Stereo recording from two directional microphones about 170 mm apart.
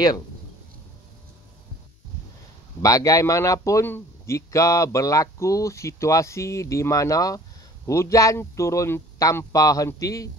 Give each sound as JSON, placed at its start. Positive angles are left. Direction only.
{"t": 2.8, "sound": "a man's voice", "side_deg": 20}